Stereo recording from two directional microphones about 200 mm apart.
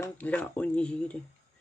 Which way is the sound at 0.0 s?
10° left (ahead or behind).